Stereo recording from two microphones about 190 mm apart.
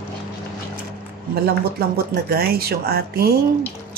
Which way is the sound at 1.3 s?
55° right (ahead or behind).